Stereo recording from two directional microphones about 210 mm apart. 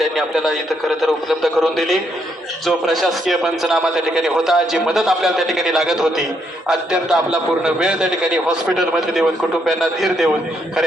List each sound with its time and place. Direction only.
0.0 s a man's voice: centre (ahead or behind)